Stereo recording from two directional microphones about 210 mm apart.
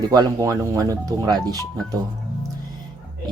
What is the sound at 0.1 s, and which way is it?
Speech, 15° right (ahead or behind).